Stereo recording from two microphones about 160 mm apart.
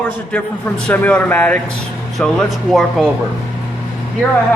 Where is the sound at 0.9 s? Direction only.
10° left (ahead or behind).